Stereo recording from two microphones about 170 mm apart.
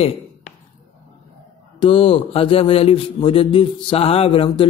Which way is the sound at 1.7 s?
30° left (ahead or behind).